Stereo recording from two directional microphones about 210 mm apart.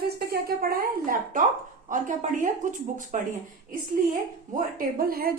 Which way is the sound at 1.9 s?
40° right (ahead or behind).